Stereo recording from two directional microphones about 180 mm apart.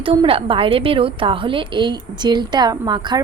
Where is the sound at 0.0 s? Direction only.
30° right (ahead or behind).